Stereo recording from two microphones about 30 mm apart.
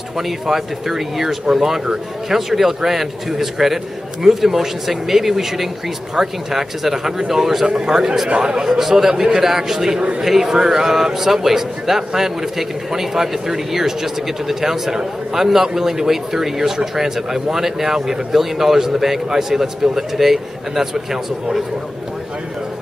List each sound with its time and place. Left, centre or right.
0.5 s a man's voice: centre
8.6 s a man's voice: centre